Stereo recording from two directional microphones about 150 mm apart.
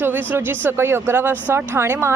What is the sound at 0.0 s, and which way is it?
Speech, 15° right (ahead or behind).